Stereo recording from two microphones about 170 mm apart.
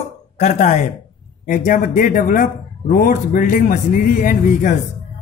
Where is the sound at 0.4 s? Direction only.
45° left (ahead or behind).